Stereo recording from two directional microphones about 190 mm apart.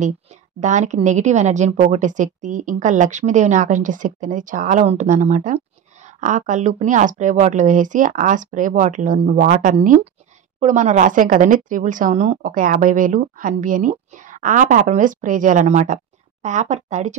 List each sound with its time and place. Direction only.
0.0 s a woman's voice: 40° right (ahead or behind)